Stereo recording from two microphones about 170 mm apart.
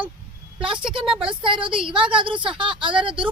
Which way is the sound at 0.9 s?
30° right (ahead or behind).